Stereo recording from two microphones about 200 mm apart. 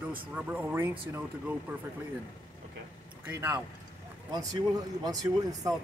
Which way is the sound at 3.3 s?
15° right (ahead or behind).